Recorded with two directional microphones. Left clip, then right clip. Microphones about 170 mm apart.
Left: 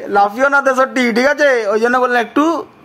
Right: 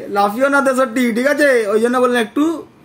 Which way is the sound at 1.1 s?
50° left (ahead or behind).